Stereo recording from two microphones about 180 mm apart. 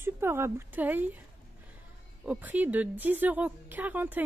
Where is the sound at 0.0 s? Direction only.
15° right (ahead or behind).